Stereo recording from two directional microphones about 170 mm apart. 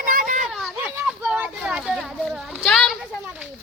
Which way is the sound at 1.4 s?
5° right (ahead or behind).